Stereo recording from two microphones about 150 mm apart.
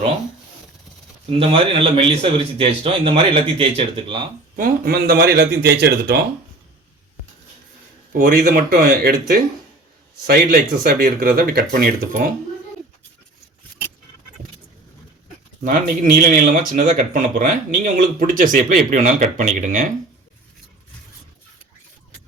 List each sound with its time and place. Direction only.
1.3 s a man's voice: 40° right (ahead or behind)
4.5 s speech: 80° right
8.1 s speech: 70° right (ahead or behind)
15.6 s speech: 65° right (ahead or behind)